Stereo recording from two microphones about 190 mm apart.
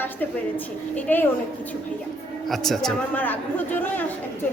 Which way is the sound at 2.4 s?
Centre (ahead or behind).